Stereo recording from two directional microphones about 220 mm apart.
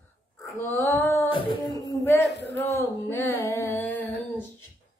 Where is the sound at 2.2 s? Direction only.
50° left (ahead or behind).